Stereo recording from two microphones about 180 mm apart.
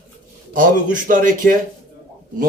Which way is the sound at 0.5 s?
50° right (ahead or behind).